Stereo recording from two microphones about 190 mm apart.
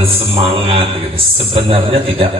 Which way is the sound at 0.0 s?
30° right (ahead or behind).